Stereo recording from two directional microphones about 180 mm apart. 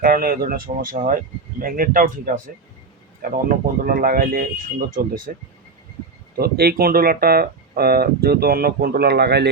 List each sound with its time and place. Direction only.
0.0 s speech: 55° right (ahead or behind)
6.4 s speech: 60° right (ahead or behind)